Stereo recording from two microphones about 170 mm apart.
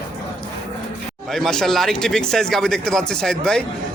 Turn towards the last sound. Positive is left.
turn(degrees=5)  # may be behind; listen again after turning